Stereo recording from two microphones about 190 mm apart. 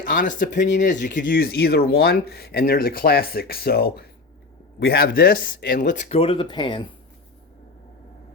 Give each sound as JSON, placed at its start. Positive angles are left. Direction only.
{"t": 0.1, "sound": "speech", "side_deg": 45}